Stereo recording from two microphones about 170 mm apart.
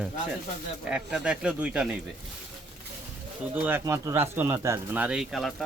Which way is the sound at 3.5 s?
10° right (ahead or behind).